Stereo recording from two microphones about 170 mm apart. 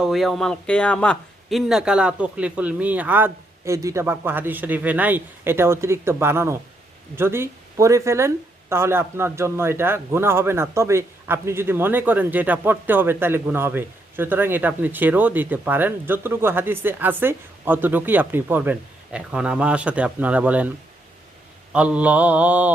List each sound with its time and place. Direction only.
0.0 s a man's voice: centre (ahead or behind)